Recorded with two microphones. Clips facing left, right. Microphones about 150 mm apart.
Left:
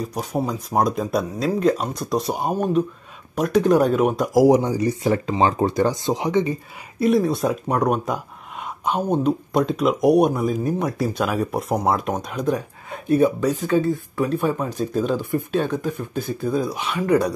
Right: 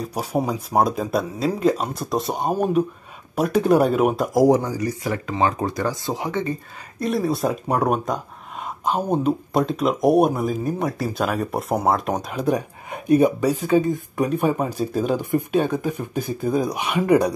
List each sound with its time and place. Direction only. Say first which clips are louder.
0.0 s speech: right 1 dB; 5° right (ahead or behind)
4.5 s speech: left 2 dB; 20° left (ahead or behind)
7.0 s speech: left 3 dB; centre (ahead or behind)
12.5 s speech: right 2 dB; 15° right (ahead or behind)